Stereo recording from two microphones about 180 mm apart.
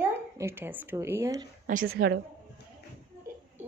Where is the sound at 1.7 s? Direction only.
55° right (ahead or behind).